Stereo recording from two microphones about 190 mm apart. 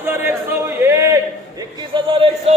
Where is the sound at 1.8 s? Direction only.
25° right (ahead or behind).